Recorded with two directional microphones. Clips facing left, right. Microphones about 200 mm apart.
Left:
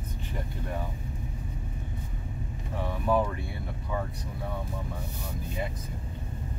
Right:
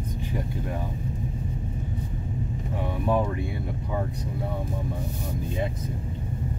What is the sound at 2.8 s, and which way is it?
Speech, 20° right (ahead or behind).